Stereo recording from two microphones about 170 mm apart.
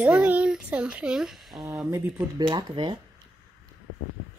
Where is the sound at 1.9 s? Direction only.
10° right (ahead or behind).